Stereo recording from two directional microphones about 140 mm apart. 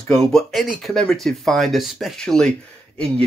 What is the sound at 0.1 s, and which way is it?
Speech, 5° left (ahead or behind).